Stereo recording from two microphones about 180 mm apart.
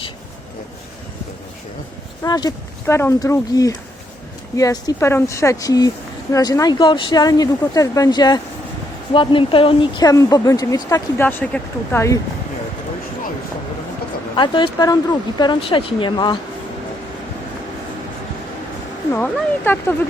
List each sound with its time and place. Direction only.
2.2 s a woman's voice: 20° left (ahead or behind)
14.3 s a woman's voice: 25° left (ahead or behind)
19.1 s speech: 10° left (ahead or behind)